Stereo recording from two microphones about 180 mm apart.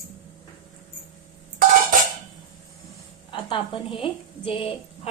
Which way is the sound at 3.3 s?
30° left (ahead or behind).